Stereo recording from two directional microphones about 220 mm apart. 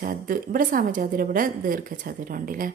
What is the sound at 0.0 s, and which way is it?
Speech, 40° right (ahead or behind).